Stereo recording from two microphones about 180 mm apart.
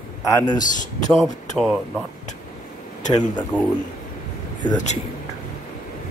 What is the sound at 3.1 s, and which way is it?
Speech, 25° left (ahead or behind).